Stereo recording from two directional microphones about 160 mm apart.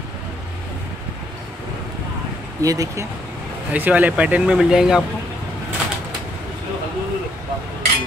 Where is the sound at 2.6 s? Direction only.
20° right (ahead or behind).